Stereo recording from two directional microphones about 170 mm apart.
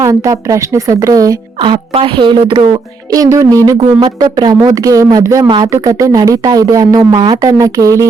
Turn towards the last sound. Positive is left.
turn(degrees=-20)  # may be behind; listen again after turning